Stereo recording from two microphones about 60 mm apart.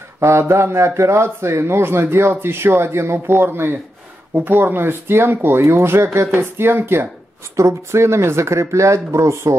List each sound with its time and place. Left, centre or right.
0.2 s a man's voice: right
7.5 s a man's voice: right